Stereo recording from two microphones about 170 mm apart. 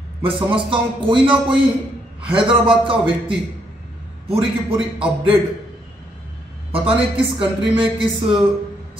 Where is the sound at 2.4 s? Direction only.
30° right (ahead or behind).